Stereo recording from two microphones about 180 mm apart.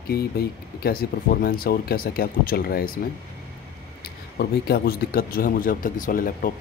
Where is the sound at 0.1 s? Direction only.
60° left (ahead or behind).